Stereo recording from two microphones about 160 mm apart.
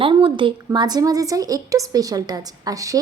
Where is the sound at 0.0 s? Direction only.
30° right (ahead or behind).